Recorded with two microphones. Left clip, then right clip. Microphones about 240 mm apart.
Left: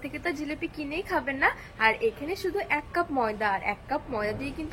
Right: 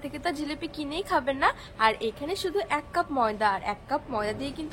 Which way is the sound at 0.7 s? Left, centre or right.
Centre.